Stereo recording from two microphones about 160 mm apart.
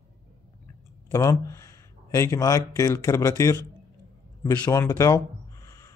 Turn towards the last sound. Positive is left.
turn(degrees=20)  # may be behind; listen again after turning